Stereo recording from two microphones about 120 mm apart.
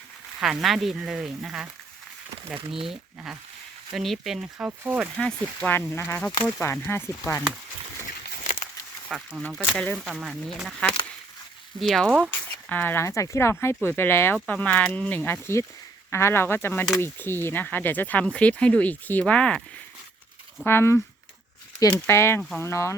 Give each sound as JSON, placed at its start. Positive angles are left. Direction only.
{"t": 0.3, "sound": "speech", "side_deg": 0}
{"t": 2.6, "sound": "speech", "side_deg": -50}
{"t": 2.8, "sound": "speech", "side_deg": -5}
{"t": 4.8, "sound": "speech", "side_deg": -15}
{"t": 5.2, "sound": "speech", "side_deg": 10}
{"t": 9.0, "sound": "speech", "side_deg": 0}
{"t": 10.2, "sound": "speech", "side_deg": 0}
{"t": 11.8, "sound": "speech", "side_deg": 0}
{"t": 12.3, "sound": "speech", "side_deg": 15}
{"t": 20.7, "sound": "speech", "side_deg": 20}
{"t": 22.4, "sound": "speech", "side_deg": 5}
{"t": 22.6, "sound": "speech", "side_deg": 25}